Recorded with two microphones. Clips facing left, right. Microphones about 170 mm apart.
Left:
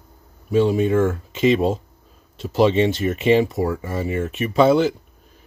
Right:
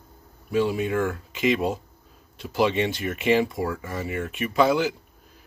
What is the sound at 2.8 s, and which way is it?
Speech, 25° left (ahead or behind).